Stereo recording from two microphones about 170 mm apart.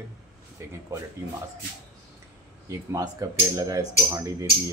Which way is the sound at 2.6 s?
20° right (ahead or behind).